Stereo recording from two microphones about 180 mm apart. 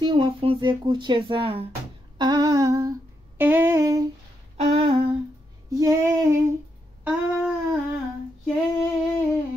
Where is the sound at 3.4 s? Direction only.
10° right (ahead or behind).